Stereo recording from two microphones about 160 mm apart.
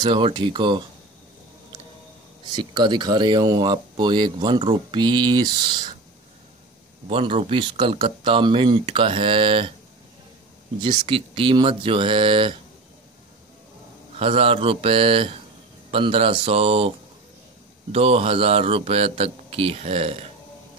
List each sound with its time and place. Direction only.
0.0 s speech: 30° right (ahead or behind)
2.5 s speech: 25° right (ahead or behind)
7.1 s speech: 35° right (ahead or behind)
10.8 s speech: 35° right (ahead or behind)
14.1 s speech: 35° right (ahead or behind)
17.9 s speech: 40° right (ahead or behind)